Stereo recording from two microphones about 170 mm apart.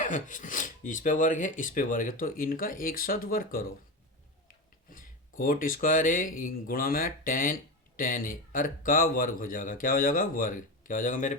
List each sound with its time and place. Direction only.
0.0 s speech: 50° left (ahead or behind)
4.9 s speech: 55° left (ahead or behind)